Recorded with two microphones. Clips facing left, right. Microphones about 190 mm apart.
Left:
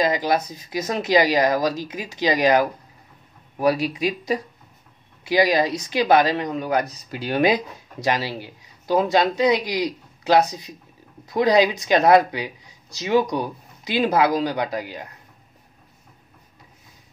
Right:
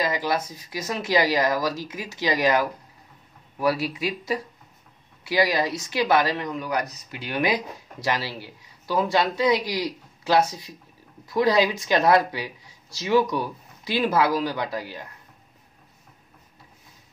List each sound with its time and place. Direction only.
0.0 s speech: 20° left (ahead or behind)
7.1 s speech: 35° left (ahead or behind); by 15.0 s 15° left (ahead or behind)